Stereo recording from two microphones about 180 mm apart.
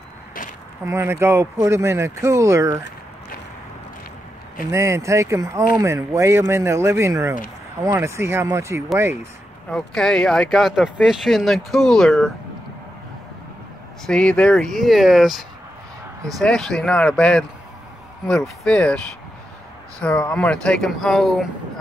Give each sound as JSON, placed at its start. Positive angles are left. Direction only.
{"t": 0.8, "sound": "speech", "side_deg": -15}
{"t": 4.6, "sound": "speech", "side_deg": -15}
{"t": 9.7, "sound": "speech", "side_deg": 5}
{"t": 14.0, "sound": "speech", "side_deg": 5}
{"t": 20.0, "sound": "speech", "side_deg": 5}